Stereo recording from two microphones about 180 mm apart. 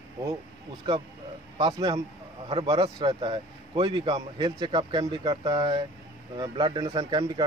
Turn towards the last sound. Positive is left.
turn(degrees=-25)  # may be behind; listen again after turning